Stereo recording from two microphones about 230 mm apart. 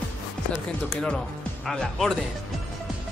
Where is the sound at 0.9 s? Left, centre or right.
Centre.